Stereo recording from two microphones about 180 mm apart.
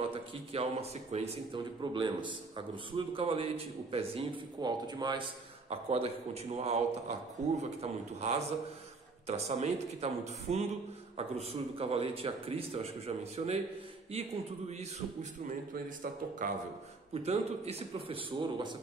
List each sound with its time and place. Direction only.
0.1 s a man's voice: 35° right (ahead or behind)
14.7 s a man's voice: 35° right (ahead or behind)
15.7 s a man's voice: 50° right (ahead or behind)
17.1 s a man's voice: 35° right (ahead or behind)